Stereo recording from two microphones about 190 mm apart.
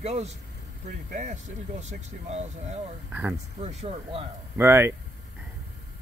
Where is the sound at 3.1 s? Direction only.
10° right (ahead or behind).